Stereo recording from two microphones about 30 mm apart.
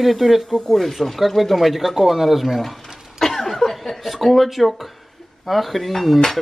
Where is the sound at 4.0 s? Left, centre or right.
Centre.